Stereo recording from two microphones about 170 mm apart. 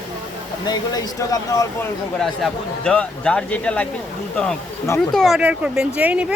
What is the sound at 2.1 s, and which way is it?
A man's voice, 5° left (ahead or behind).